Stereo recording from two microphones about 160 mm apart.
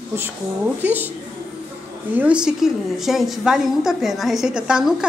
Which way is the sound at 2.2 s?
5° right (ahead or behind).